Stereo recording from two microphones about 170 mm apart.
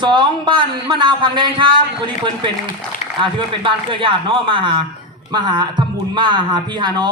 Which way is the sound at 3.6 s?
30° right (ahead or behind).